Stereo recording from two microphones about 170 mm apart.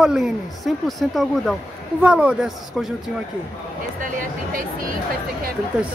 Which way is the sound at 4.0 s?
50° right (ahead or behind).